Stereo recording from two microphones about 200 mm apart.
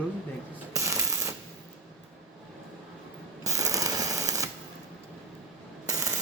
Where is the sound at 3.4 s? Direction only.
15° right (ahead or behind).